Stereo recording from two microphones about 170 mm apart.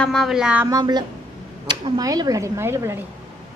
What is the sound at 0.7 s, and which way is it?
Speech, 25° right (ahead or behind).